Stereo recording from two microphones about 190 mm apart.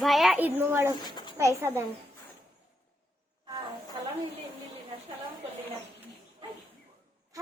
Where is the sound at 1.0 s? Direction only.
25° left (ahead or behind).